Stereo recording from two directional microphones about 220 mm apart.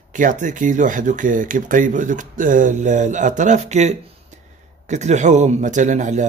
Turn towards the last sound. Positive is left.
turn(degrees=-35)  # may be behind; listen again after turning